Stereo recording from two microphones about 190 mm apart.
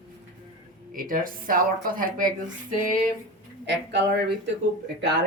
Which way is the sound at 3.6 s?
65° right (ahead or behind).